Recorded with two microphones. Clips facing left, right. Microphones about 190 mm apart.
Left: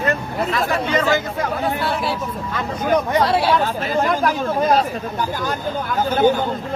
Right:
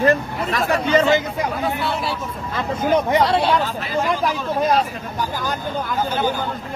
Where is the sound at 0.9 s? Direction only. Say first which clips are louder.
Right 3 dB; 25° right (ahead or behind).